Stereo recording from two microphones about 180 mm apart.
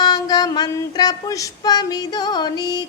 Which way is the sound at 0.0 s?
20° left (ahead or behind).